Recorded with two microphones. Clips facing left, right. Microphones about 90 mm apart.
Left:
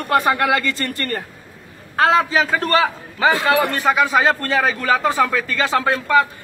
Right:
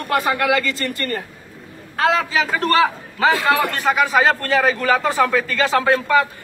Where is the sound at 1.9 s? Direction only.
25° left (ahead or behind).